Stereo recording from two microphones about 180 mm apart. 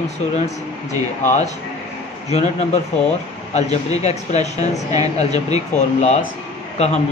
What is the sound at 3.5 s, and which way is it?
Speech, 35° left (ahead or behind).